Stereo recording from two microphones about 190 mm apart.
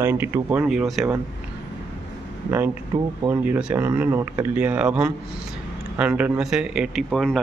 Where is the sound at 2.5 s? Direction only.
10° right (ahead or behind).